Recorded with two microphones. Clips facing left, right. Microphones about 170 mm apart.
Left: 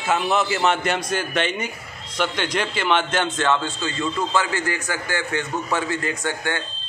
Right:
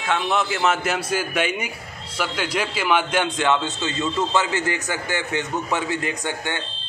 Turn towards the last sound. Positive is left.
turn(degrees=-20)  # may be behind; listen again after turning